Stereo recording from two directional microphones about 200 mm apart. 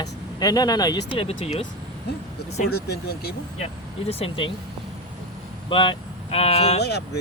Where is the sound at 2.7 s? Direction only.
55° left (ahead or behind).